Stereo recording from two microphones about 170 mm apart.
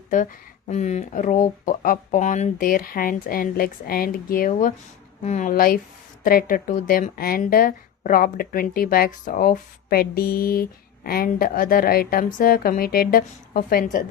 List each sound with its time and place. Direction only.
0.7 s a woman's voice: 45° left (ahead or behind)